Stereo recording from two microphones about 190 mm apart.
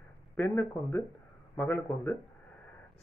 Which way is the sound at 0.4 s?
5° left (ahead or behind).